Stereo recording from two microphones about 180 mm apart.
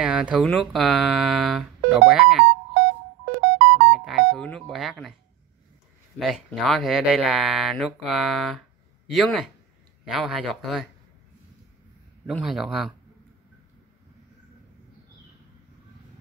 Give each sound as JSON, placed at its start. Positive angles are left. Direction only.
{"t": 0.0, "sound": "a sound", "side_deg": -5}
{"t": 0.5, "sound": "speech", "side_deg": 0}
{"t": 3.3, "sound": "music", "side_deg": -70}
{"t": 3.9, "sound": "a sound", "side_deg": 0}
{"t": 6.1, "sound": "speech", "side_deg": 0}
{"t": 12.3, "sound": "speech", "side_deg": 0}